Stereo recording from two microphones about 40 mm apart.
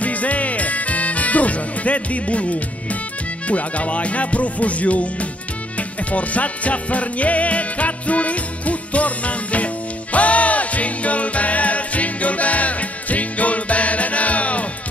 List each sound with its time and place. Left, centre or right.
0.0 s music: left
3.4 s music: left